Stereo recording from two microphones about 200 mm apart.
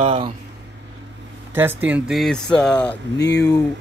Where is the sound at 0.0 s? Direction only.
30° right (ahead or behind).